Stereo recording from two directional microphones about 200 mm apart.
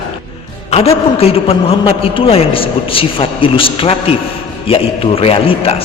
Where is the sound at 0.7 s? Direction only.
30° left (ahead or behind).